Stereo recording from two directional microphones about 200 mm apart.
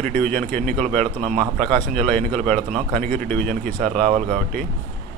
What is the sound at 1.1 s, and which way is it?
Speech, 30° right (ahead or behind).